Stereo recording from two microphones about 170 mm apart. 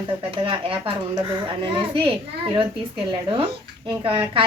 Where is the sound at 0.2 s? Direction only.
30° right (ahead or behind).